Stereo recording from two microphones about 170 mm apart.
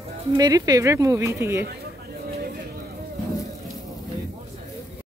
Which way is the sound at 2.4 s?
65° right (ahead or behind).